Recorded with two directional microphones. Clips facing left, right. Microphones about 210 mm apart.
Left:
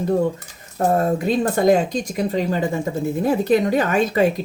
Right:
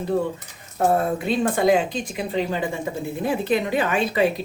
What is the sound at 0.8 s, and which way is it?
Speech, 40° left (ahead or behind).